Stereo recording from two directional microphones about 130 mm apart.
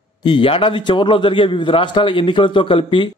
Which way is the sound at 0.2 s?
40° left (ahead or behind).